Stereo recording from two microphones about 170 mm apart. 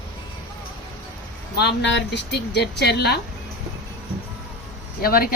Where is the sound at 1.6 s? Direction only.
90° left.